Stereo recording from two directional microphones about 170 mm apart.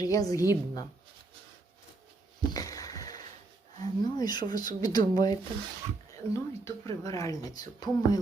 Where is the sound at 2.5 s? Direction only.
20° left (ahead or behind).